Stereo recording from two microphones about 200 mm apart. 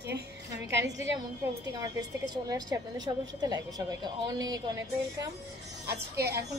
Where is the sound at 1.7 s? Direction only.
15° right (ahead or behind).